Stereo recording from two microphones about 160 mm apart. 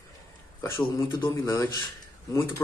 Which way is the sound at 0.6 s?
20° left (ahead or behind).